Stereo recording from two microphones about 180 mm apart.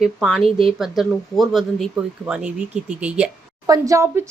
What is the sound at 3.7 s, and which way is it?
Speech, 15° right (ahead or behind).